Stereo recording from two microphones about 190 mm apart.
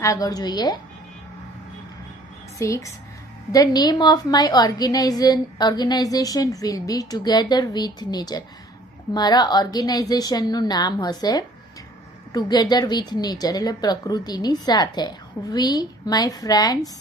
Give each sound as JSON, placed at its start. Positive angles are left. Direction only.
{"t": 0.0, "sound": "a woman's voice", "side_deg": 15}
{"t": 2.6, "sound": "a woman's voice", "side_deg": 15}